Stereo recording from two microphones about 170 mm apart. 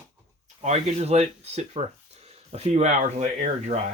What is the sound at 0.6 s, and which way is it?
Speech, 40° right (ahead or behind).